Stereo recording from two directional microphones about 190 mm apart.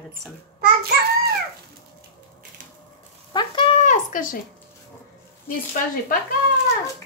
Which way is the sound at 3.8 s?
40° left (ahead or behind).